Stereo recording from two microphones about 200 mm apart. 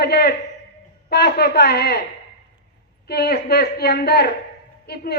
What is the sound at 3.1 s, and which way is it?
A man's voice, 55° left (ahead or behind).